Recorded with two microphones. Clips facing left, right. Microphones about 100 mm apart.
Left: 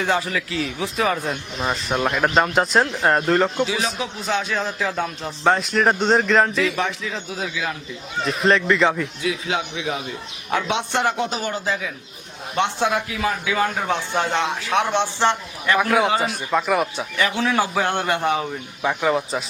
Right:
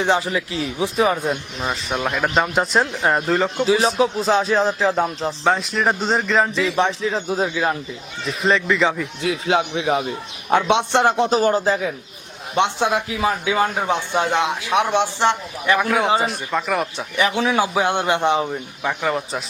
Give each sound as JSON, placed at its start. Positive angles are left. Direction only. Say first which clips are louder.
{"t": 0.0, "sound": "speech", "louder": "right 3 dB", "side_deg": -25}
{"t": 1.7, "sound": "speech", "louder": "left 1 dB", "side_deg": 0}
{"t": 3.7, "sound": "speech", "louder": "right 8 dB", "side_deg": -35}
{"t": 5.4, "sound": "speech", "louder": "left 2 dB", "side_deg": 0}
{"t": 6.7, "sound": "speech", "louder": "right 5 dB", "side_deg": -30}
{"t": 8.2, "sound": "speech", "louder": "left 1 dB", "side_deg": 0}
{"t": 9.2, "sound": "speech", "louder": "right 6 dB", "side_deg": -40}
{"t": 12.5, "sound": "a man's voice", "louder": "right 2 dB", "side_deg": -20}
{"t": 15.8, "sound": "speech", "louder": "left 2 dB", "side_deg": 0}
{"t": 17.2, "sound": "a man's voice", "louder": "right 2 dB", "side_deg": -15}
{"t": 18.8, "sound": "speech", "louder": "left 2 dB", "side_deg": 0}